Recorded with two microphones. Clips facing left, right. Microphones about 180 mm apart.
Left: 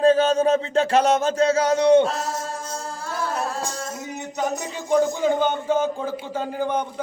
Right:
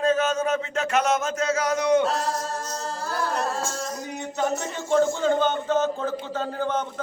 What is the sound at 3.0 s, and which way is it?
Carnatic music, centre (ahead or behind).